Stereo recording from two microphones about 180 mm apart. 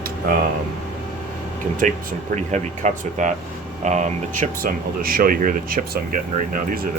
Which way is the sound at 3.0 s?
45° right (ahead or behind).